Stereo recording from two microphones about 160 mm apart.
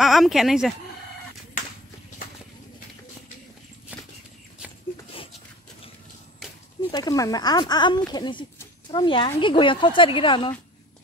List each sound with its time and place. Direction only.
0.0 s speech: centre (ahead or behind)
3.9 s bird flight: 10° right (ahead or behind)
6.9 s speech: 25° left (ahead or behind)